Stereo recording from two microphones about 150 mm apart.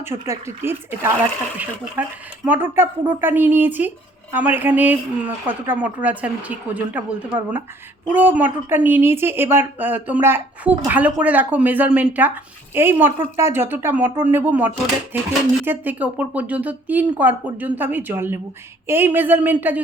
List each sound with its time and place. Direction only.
0.0 s speech: 15° right (ahead or behind)